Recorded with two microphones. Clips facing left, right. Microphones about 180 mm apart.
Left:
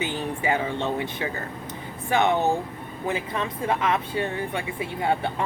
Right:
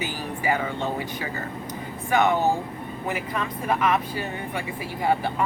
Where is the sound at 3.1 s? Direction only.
25° left (ahead or behind).